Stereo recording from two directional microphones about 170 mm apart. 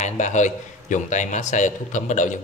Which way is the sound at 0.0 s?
45° left (ahead or behind).